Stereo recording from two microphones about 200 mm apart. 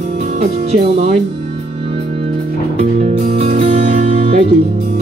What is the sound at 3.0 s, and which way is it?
Music, 30° right (ahead or behind).